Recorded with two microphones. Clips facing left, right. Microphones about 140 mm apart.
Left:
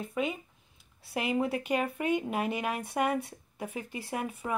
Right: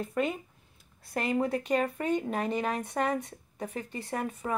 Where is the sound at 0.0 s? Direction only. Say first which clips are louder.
Right 2 dB; centre (ahead or behind).